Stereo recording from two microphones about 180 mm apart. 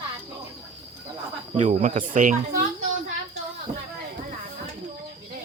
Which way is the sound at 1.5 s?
40° right (ahead or behind).